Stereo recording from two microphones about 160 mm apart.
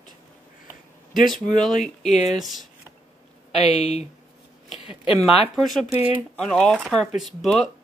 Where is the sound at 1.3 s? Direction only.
Centre (ahead or behind).